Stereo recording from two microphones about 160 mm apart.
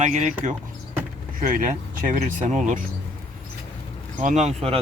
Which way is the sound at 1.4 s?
55° right (ahead or behind).